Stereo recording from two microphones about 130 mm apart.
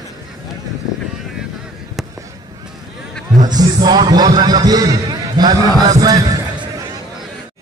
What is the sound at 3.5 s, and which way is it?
Speech, 30° right (ahead or behind).